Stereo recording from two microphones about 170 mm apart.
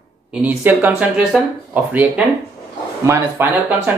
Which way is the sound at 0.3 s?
10° right (ahead or behind).